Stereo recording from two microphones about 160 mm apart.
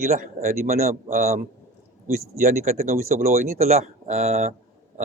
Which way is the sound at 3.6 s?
45° right (ahead or behind).